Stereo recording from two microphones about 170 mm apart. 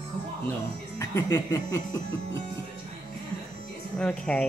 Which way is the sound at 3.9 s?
5° left (ahead or behind).